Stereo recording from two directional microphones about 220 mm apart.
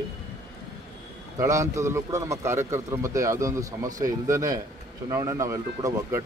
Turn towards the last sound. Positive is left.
turn(degrees=-15)  # may be behind; listen again after turning